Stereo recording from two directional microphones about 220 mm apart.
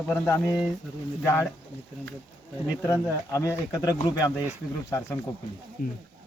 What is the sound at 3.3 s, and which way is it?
Speech, 15° left (ahead or behind).